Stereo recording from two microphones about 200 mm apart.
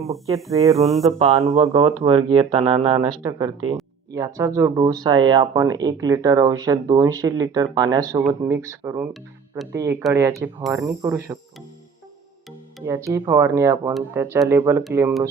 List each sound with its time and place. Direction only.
0.5 s speech: 15° right (ahead or behind)
1.0 s speech: 25° right (ahead or behind); by 11.3 s 10° right (ahead or behind)
12.8 s speech: 15° right (ahead or behind)